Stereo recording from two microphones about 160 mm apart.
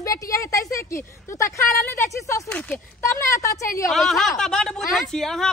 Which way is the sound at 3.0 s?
20° left (ahead or behind).